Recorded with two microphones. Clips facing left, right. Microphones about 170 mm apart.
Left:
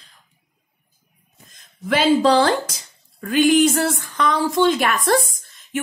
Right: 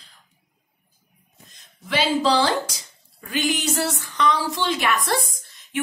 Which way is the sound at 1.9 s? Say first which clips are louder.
Left 5 dB; 50° left (ahead or behind).